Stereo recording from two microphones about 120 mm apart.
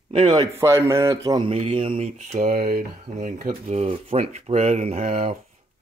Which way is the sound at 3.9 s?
60° right (ahead or behind).